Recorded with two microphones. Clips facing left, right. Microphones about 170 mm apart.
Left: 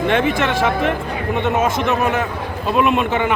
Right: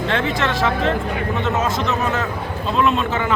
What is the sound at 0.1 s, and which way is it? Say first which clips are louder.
Speech: left 3 dB; 15° left (ahead or behind).